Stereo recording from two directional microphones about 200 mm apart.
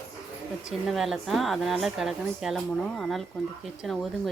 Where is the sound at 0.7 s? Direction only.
Centre (ahead or behind).